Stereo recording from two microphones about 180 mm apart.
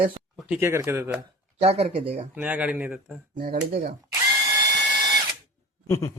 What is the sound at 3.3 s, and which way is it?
Speech, 50° right (ahead or behind).